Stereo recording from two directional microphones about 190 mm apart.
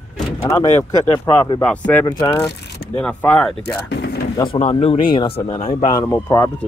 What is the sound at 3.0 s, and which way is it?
Speech, 5° left (ahead or behind).